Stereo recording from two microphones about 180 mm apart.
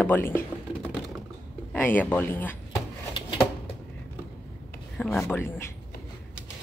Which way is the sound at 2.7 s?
25° left (ahead or behind).